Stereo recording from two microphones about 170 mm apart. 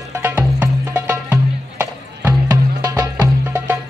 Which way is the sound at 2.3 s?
25° right (ahead or behind).